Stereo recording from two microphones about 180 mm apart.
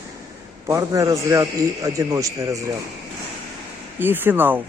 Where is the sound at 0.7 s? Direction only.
15° right (ahead or behind).